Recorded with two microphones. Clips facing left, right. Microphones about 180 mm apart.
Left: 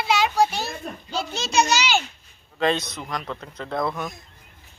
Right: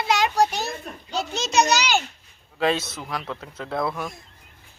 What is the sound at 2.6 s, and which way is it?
Speech, 5° right (ahead or behind).